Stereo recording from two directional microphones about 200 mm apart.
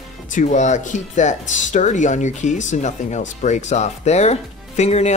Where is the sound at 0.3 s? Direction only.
40° left (ahead or behind).